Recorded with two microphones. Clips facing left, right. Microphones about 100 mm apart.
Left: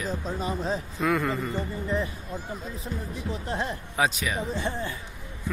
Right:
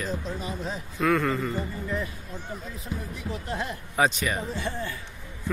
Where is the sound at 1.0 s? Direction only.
10° left (ahead or behind).